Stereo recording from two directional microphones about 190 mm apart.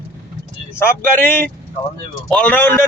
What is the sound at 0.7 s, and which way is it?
A man's voice, 10° left (ahead or behind).